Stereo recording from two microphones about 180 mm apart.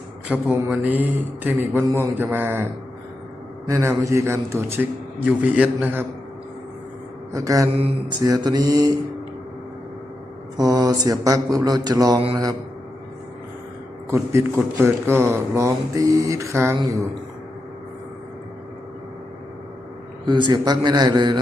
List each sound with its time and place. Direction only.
0.3 s speech: 5° right (ahead or behind)
3.7 s speech: 15° right (ahead or behind)
7.3 s mantra: 20° right (ahead or behind)
10.6 s mantra: 20° right (ahead or behind)
14.1 s speech: 15° right (ahead or behind)
20.2 s mantra: 25° right (ahead or behind)